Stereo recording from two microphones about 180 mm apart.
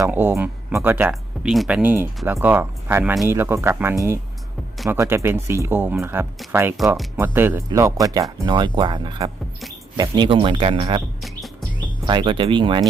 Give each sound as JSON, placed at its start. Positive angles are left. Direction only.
{"t": 0.0, "sound": "speech", "side_deg": -10}
{"t": 11.2, "sound": "music", "side_deg": 0}
{"t": 12.0, "sound": "speech", "side_deg": -25}